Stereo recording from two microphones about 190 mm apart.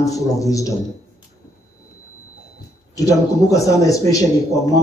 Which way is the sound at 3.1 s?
15° left (ahead or behind).